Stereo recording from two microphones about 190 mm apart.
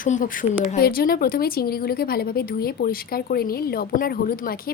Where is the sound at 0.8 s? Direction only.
50° left (ahead or behind).